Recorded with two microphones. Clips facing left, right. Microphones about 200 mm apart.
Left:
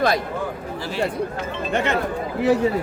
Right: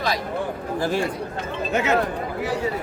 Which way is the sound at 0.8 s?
50° right (ahead or behind).